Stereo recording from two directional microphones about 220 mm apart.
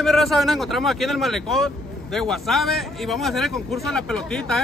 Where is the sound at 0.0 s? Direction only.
Centre (ahead or behind).